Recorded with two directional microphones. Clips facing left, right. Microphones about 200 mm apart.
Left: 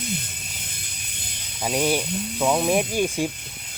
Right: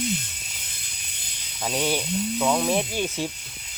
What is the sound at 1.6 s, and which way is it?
Speech, 10° left (ahead or behind).